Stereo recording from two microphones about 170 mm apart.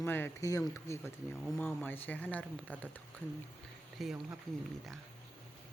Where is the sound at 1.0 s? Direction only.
5° left (ahead or behind).